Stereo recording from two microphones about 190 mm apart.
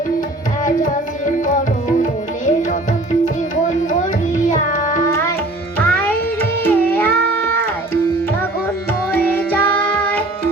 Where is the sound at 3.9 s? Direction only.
40° left (ahead or behind).